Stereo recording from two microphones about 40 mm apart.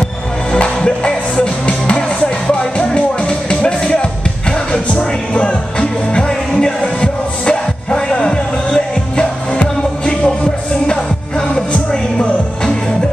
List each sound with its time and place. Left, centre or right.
0.5 s music: left